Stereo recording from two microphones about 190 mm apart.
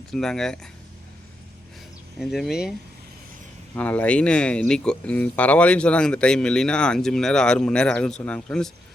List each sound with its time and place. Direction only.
0.1 s speech: 5° left (ahead or behind)
2.1 s speech: centre (ahead or behind)
3.8 s speech: 10° left (ahead or behind)